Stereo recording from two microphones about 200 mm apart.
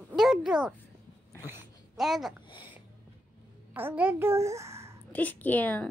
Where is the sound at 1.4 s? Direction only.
5° right (ahead or behind).